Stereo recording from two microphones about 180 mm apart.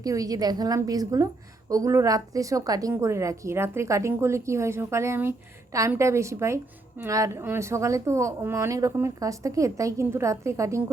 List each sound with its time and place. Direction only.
0.0 s a woman's voice: 20° right (ahead or behind)